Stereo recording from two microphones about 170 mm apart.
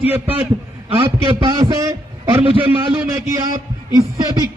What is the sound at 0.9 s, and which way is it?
A man's voice, 30° right (ahead or behind).